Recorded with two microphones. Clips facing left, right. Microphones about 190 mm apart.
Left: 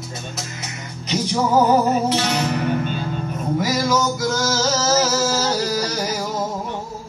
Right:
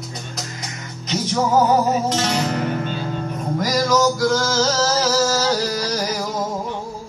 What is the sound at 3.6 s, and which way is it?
Music, 5° left (ahead or behind).